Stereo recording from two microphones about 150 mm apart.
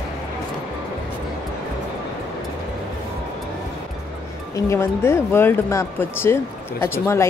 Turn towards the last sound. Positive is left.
turn(degrees=15)  # may be behind; listen again after turning